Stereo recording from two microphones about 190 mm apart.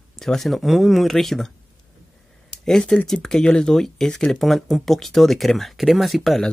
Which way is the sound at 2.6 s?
5° left (ahead or behind).